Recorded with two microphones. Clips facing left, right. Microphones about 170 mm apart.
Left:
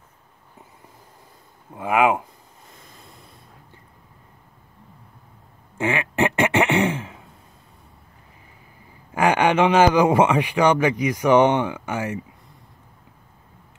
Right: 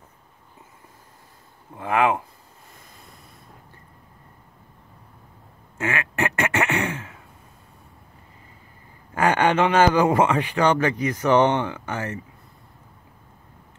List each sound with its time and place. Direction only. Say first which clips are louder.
1.8 s speech: left 2 dB; 10° left (ahead or behind)
5.8 s a sound: left 4 dB; 15° left (ahead or behind)
9.1 s speech: left 1 dB; 10° left (ahead or behind)